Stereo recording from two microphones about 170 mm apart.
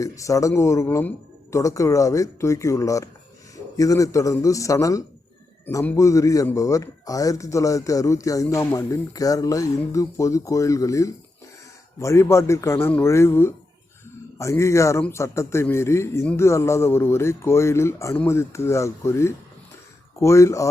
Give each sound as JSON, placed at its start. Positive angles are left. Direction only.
{"t": 0.0, "sound": "a man's voice", "side_deg": 20}